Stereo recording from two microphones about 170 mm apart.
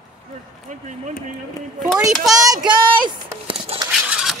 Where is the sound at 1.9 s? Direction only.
Centre (ahead or behind).